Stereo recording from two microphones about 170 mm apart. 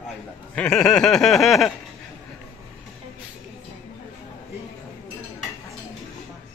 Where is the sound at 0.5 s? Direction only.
5° left (ahead or behind).